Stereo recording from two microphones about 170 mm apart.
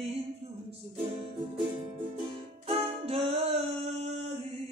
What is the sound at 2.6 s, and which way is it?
Music, 35° right (ahead or behind).